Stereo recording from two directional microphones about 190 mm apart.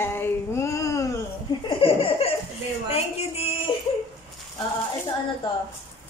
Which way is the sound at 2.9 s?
30° left (ahead or behind).